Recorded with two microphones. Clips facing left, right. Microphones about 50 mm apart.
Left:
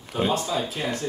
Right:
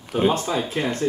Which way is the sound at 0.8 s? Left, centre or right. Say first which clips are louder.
Right 4 dB; right.